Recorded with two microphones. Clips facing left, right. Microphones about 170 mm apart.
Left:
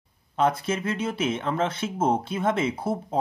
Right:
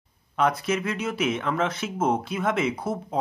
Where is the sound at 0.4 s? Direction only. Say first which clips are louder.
Even; 30° left (ahead or behind).